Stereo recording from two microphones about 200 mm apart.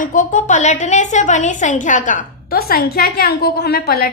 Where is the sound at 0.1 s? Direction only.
40° left (ahead or behind).